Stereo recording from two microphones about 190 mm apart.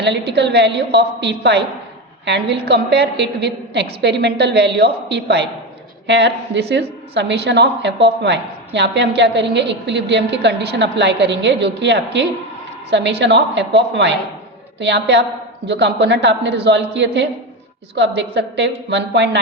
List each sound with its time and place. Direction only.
0.0 s a woman's voice: 65° right (ahead or behind)